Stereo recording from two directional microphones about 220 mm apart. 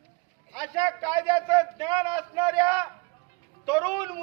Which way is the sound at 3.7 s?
15° right (ahead or behind).